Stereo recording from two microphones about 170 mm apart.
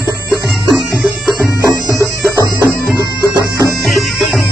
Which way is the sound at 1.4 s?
15° right (ahead or behind).